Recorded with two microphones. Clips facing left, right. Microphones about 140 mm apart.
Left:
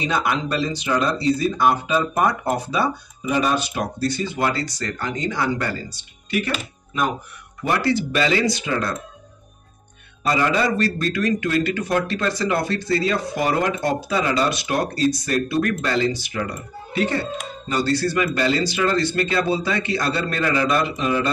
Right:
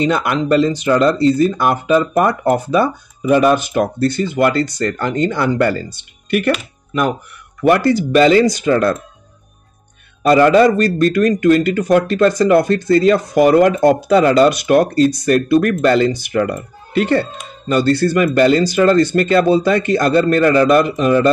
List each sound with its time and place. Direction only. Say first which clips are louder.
0.0 s speech: right 6 dB; 55° right (ahead or behind)
7.9 s a man's voice: right 9 dB; 40° right (ahead or behind)
10.2 s a man's voice: right 11 dB; 50° right (ahead or behind)